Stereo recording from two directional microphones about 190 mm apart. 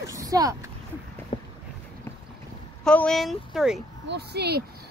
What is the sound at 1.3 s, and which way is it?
Boat, 35° left (ahead or behind).